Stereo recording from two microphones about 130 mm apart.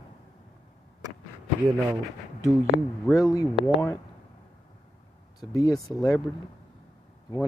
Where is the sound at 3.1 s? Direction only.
25° left (ahead or behind).